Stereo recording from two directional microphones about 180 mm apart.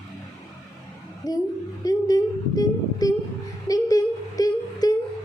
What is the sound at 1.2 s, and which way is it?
Speech, 20° left (ahead or behind).